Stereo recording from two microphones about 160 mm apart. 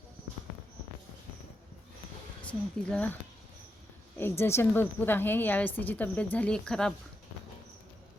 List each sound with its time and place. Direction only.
2.4 s speech: 10° left (ahead or behind)
4.2 s a woman's voice: 15° left (ahead or behind)